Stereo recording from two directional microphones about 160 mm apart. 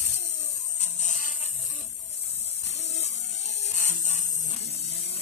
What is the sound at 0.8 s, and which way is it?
Electric shaver, 45° left (ahead or behind).